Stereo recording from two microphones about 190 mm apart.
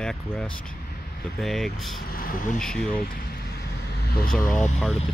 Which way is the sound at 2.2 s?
45° left (ahead or behind).